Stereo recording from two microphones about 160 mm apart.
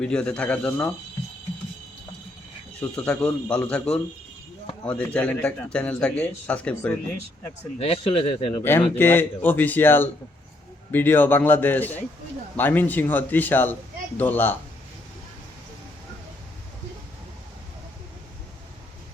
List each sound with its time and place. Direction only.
0.0 s a man's voice: 5° left (ahead or behind)
2.9 s a man's voice: 5° left (ahead or behind)
7.8 s a man's voice: 35° left (ahead or behind)
9.0 s a man's voice: 10° left (ahead or behind)